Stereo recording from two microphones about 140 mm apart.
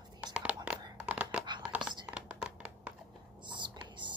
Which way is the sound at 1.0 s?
10° right (ahead or behind).